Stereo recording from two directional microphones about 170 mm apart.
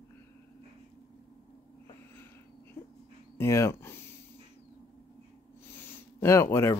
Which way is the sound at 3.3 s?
15° left (ahead or behind).